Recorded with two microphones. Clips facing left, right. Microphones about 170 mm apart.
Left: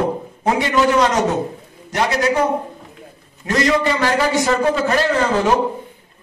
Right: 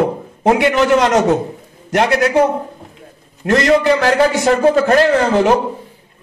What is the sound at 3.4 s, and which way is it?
Speech, 60° right (ahead or behind).